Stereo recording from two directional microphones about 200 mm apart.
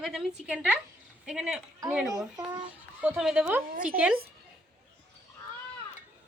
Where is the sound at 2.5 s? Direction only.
25° right (ahead or behind).